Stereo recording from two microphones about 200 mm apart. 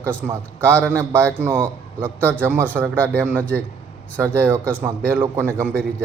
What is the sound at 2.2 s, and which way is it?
Speech, 5° left (ahead or behind).